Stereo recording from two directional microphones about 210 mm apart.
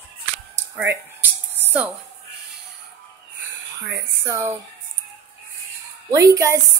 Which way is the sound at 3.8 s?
15° right (ahead or behind).